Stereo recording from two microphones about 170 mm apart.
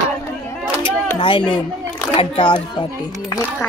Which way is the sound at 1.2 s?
30° left (ahead or behind).